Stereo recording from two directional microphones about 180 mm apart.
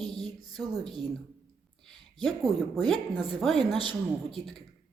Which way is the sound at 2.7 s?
Centre (ahead or behind).